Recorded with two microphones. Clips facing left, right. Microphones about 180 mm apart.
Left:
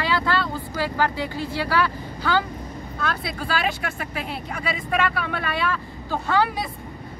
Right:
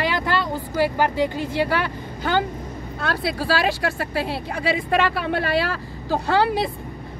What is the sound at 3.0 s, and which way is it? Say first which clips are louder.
Speech: right 4 dB; 35° right (ahead or behind).